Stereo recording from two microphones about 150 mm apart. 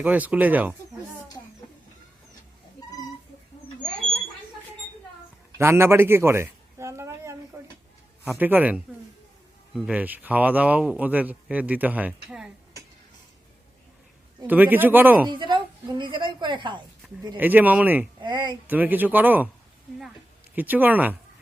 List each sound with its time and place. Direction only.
0.0 s a man's voice: 10° right (ahead or behind)
5.5 s a sound: 15° right (ahead or behind)
7.5 s stir: 15° right (ahead or behind)
8.3 s a man's voice: 10° right (ahead or behind)
14.4 s a man's voice: 10° right (ahead or behind)
15.3 s a woman's voice: 30° right (ahead or behind)
17.3 s a man's voice: 10° right (ahead or behind)
18.2 s speech: 30° right (ahead or behind)
18.7 s a man's voice: 10° right (ahead or behind)
20.6 s a man's voice: 10° right (ahead or behind)